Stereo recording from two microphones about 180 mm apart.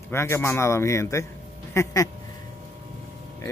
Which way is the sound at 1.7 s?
15° left (ahead or behind).